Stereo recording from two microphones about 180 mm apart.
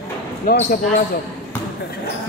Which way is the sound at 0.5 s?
55° left (ahead or behind).